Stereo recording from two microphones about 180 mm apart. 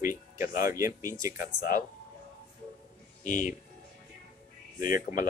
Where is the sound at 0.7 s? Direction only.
15° right (ahead or behind).